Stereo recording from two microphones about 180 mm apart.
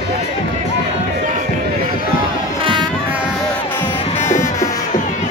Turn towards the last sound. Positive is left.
turn(degrees=15)  # may be behind; listen again after turning